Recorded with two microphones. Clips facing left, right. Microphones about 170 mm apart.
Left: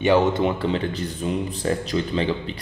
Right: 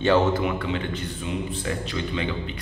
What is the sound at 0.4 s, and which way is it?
A man's voice, 30° left (ahead or behind).